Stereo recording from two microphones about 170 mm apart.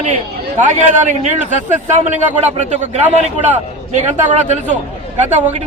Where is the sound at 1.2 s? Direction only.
45° right (ahead or behind).